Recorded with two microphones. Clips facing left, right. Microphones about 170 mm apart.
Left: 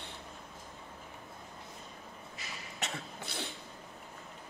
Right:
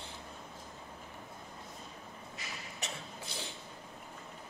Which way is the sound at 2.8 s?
65° left (ahead or behind).